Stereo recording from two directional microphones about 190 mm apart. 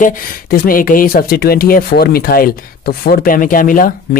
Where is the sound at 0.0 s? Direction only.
50° left (ahead or behind).